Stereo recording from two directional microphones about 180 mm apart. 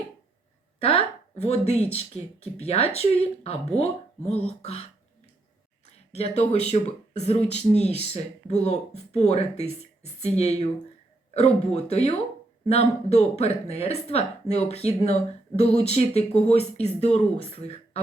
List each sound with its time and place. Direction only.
0.8 s speech: 35° left (ahead or behind)
6.1 s speech: 35° left (ahead or behind)